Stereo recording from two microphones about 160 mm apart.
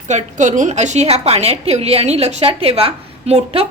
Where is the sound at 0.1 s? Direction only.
50° right (ahead or behind).